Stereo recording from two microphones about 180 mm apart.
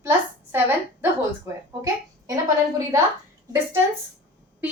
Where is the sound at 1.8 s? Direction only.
20° right (ahead or behind).